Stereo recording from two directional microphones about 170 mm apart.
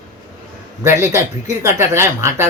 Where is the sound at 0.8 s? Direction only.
15° right (ahead or behind).